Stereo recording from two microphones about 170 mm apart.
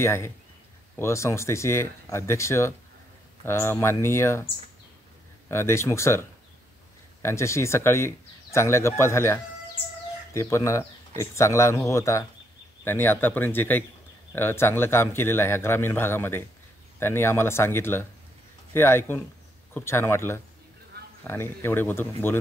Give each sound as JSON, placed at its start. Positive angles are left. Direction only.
{"t": 0.0, "sound": "speech", "side_deg": 15}
{"t": 5.5, "sound": "speech", "side_deg": 15}